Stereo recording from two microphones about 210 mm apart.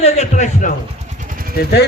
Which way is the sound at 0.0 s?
35° left (ahead or behind).